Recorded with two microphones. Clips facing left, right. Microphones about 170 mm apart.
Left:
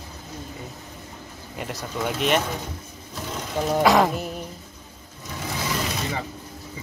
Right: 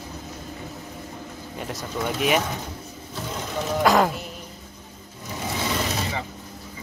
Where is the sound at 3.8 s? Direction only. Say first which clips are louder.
Left 1 dB; centre (ahead or behind).